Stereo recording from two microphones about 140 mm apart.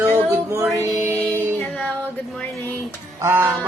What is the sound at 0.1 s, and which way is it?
Music, 20° right (ahead or behind).